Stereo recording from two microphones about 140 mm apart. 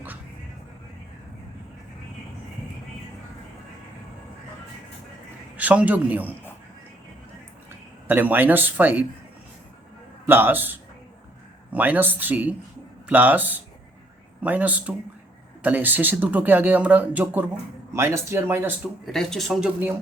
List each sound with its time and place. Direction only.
5.5 s a man's voice: 10° right (ahead or behind)
8.0 s speech: 15° right (ahead or behind)
10.2 s speech: 15° right (ahead or behind)
18.8 s speech: centre (ahead or behind)